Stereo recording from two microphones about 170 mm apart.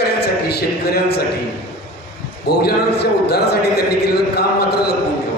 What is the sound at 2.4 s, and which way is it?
A man's voice, 70° left (ahead or behind).